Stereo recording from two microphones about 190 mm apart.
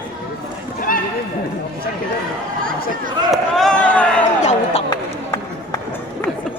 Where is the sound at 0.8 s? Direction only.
45° left (ahead or behind).